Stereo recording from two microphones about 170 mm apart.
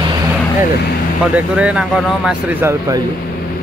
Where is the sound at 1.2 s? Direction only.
5° right (ahead or behind).